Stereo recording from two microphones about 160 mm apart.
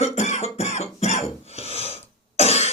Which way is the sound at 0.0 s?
45° left (ahead or behind).